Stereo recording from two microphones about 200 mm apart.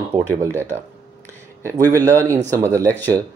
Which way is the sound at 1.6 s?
15° right (ahead or behind).